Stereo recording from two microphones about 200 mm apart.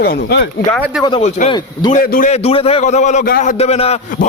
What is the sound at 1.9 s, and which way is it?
A man's voice, 40° left (ahead or behind).